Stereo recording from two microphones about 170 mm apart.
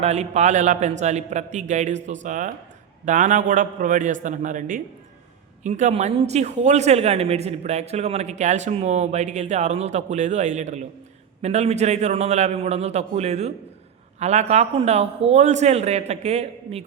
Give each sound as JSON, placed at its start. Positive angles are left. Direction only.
{"t": 0.0, "sound": "a man's voice", "side_deg": -40}